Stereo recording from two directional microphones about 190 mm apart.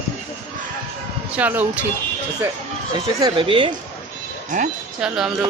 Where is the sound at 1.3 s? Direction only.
10° right (ahead or behind).